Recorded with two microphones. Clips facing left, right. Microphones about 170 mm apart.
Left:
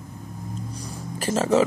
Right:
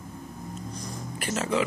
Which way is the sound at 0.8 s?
35° left (ahead or behind).